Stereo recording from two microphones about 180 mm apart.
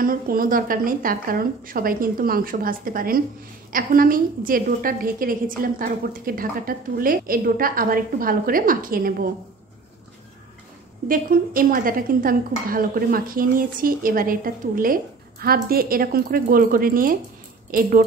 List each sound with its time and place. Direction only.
0.0 s speech: 50° right (ahead or behind)
11.1 s speech: 50° right (ahead or behind)